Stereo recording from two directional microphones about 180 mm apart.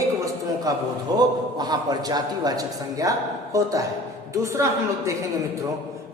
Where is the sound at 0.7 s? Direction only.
20° right (ahead or behind).